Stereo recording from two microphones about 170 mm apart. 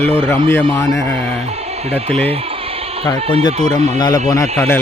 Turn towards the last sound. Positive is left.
turn(degrees=20)  # may be behind; listen again after turning